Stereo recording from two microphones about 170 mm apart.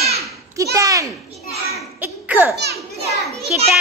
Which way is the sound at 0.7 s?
20° right (ahead or behind).